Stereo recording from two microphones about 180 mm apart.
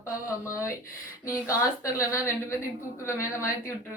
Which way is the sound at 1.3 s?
15° left (ahead or behind).